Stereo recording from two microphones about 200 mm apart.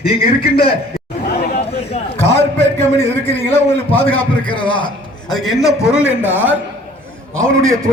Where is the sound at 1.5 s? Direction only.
30° left (ahead or behind).